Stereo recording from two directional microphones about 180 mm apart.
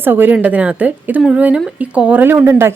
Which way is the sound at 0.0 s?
10° right (ahead or behind).